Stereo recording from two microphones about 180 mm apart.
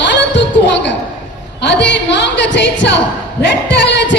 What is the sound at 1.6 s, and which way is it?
A woman's voice, 75° left (ahead or behind).